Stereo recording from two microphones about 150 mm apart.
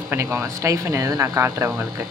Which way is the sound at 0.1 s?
15° right (ahead or behind).